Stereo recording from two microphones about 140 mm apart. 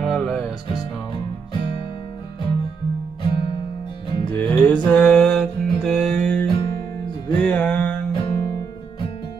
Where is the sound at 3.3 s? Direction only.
35° left (ahead or behind).